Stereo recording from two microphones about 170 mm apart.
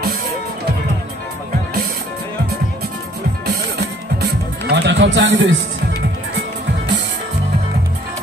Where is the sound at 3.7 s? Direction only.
75° right (ahead or behind); by 5.5 s 90° right.